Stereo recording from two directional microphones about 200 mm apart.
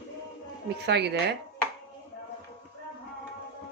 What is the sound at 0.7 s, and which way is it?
Speech, 55° right (ahead or behind).